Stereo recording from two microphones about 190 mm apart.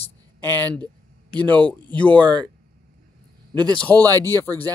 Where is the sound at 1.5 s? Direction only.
5° left (ahead or behind).